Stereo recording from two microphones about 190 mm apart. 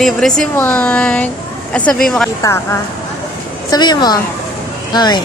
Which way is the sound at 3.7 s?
20° left (ahead or behind).